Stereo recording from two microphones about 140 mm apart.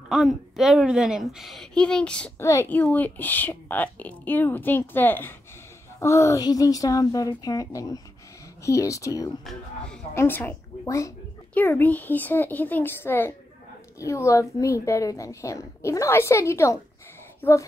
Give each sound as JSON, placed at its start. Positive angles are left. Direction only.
{"t": 0.1, "sound": "a woman's voice", "side_deg": 0}
{"t": 2.4, "sound": "a woman's voice", "side_deg": 20}